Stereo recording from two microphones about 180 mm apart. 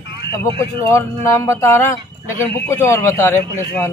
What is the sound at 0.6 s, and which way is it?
Speech, 15° left (ahead or behind).